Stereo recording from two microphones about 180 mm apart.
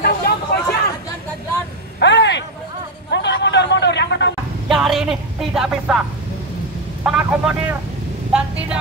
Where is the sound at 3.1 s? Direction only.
75° left (ahead or behind).